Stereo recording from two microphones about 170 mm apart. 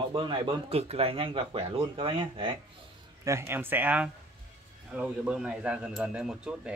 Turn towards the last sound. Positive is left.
turn(degrees=-5)  # may be behind; listen again after turning